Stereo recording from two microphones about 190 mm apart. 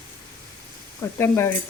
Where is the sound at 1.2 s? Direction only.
15° left (ahead or behind).